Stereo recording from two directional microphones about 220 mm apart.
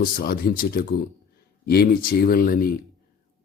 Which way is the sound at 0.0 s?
45° left (ahead or behind).